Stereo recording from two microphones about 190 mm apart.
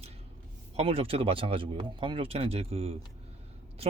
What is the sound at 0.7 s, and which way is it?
Speech, 30° right (ahead or behind).